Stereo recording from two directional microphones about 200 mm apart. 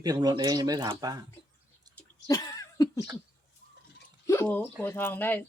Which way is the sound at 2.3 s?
15° left (ahead or behind).